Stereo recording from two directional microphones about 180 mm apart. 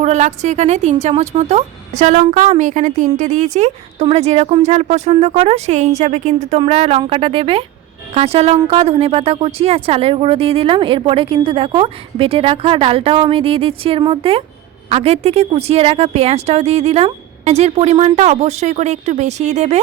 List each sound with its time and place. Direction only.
0.0 s a woman's voice: 40° right (ahead or behind)